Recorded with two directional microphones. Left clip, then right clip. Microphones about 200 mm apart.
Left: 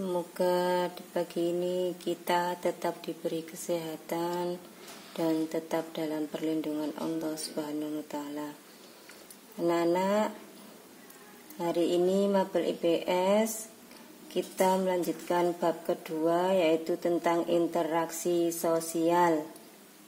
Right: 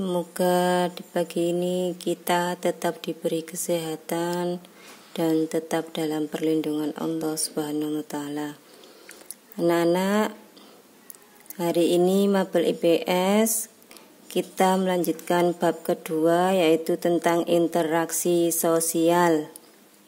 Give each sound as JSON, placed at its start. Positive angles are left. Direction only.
{"t": 0.0, "sound": "a woman's voice", "side_deg": -45}
{"t": 9.6, "sound": "a woman's voice", "side_deg": -50}
{"t": 11.5, "sound": "a woman's voice", "side_deg": -50}